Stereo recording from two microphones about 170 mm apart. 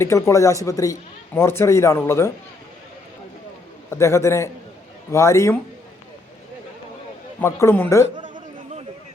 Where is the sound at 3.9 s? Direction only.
15° left (ahead or behind).